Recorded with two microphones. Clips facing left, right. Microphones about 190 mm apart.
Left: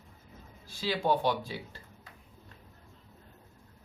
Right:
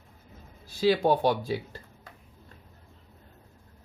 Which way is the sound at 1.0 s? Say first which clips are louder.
Right 5 dB; 40° right (ahead or behind).